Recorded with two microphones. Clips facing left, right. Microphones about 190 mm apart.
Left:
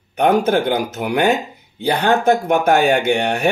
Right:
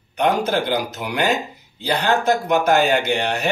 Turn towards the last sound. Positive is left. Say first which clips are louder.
# left 3 dB
turn(degrees=55)  # may be behind; listen again after turning